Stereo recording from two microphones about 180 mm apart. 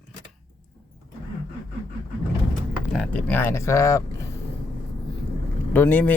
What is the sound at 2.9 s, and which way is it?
Speech, 5° left (ahead or behind).